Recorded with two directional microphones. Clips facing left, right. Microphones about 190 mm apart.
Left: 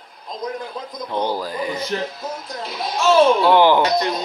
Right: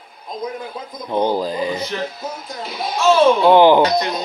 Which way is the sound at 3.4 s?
20° right (ahead or behind).